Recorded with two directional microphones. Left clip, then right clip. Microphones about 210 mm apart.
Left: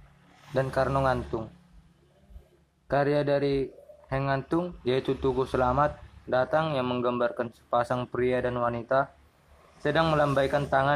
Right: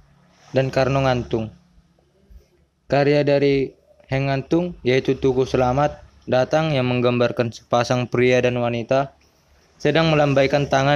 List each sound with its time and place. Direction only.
0.6 s speech: 40° right (ahead or behind)
2.9 s a man's voice: 40° right (ahead or behind)